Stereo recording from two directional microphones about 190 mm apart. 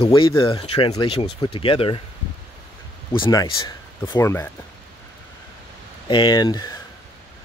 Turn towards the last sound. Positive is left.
turn(degrees=20)  # may be behind; listen again after turning